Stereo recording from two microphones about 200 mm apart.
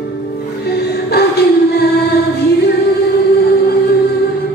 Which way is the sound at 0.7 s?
55° left (ahead or behind).